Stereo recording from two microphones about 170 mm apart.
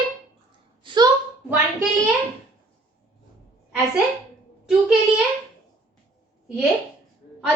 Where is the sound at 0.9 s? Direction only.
30° right (ahead or behind).